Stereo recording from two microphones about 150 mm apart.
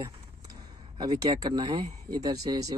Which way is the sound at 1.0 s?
25° right (ahead or behind).